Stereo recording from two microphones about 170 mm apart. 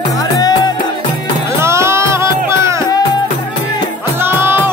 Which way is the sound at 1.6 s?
15° right (ahead or behind).